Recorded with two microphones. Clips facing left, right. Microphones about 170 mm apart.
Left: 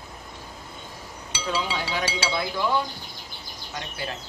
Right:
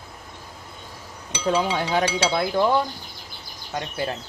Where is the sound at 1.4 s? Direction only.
50° right (ahead or behind).